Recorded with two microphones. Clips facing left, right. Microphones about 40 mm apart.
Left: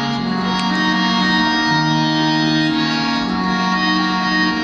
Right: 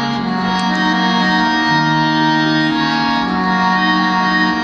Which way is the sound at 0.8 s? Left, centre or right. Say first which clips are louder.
Right 1 dB; centre.